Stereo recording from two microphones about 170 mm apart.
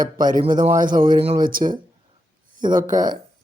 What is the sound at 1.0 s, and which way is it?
Speech, 30° right (ahead or behind).